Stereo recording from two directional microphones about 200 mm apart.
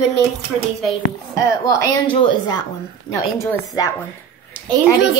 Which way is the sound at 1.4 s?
15° left (ahead or behind).